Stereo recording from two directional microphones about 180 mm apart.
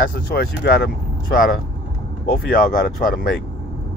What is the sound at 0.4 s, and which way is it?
Speech, 60° left (ahead or behind).